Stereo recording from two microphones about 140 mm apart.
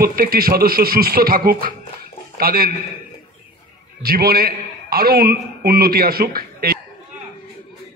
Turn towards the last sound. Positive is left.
turn(degrees=-90)